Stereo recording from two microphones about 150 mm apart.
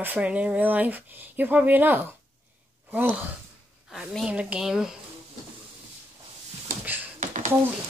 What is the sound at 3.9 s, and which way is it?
Speech, 5° right (ahead or behind).